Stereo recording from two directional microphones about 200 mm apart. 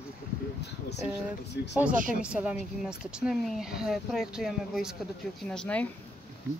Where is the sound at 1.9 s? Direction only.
40° right (ahead or behind).